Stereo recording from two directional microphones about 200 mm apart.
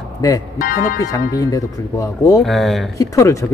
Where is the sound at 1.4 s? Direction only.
15° left (ahead or behind).